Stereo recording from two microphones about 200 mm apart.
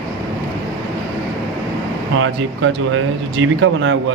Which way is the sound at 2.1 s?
75° right (ahead or behind).